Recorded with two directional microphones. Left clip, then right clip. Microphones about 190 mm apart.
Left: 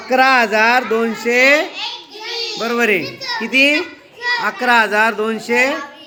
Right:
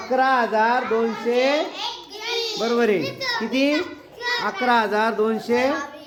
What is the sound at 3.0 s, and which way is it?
Speech, 40° right (ahead or behind).